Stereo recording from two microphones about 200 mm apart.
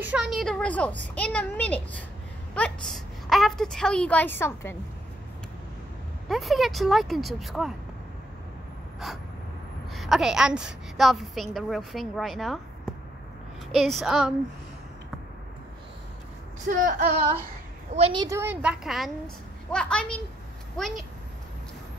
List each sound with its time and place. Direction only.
0.0 s a woman's voice: 5° right (ahead or behind); by 4.7 s 10° left (ahead or behind)
6.2 s a woman's voice: centre (ahead or behind)
9.0 s a woman's voice: centre (ahead or behind)
13.7 s a woman's voice: centre (ahead or behind)
16.6 s speech: 40° right (ahead or behind)
17.9 s a woman's voice: 25° right (ahead or behind); by 21.0 s centre (ahead or behind)